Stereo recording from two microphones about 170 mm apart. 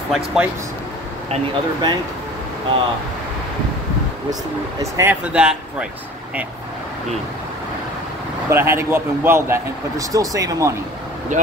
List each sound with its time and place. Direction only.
0.1 s speech: centre (ahead or behind)
1.3 s speech: 25° right (ahead or behind)
4.3 s speech: 20° right (ahead or behind)
5.2 s speech: 5° right (ahead or behind)
8.5 s speech: 15° right (ahead or behind)